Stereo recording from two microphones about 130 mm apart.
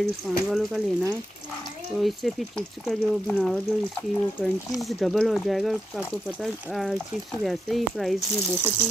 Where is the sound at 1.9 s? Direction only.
Centre (ahead or behind).